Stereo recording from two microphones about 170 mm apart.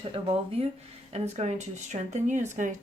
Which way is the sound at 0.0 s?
35° right (ahead or behind).